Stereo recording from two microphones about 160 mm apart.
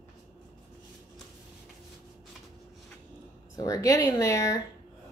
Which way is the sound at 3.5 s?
20° left (ahead or behind).